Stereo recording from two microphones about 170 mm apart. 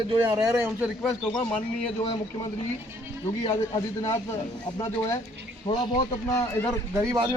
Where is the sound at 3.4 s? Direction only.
25° left (ahead or behind).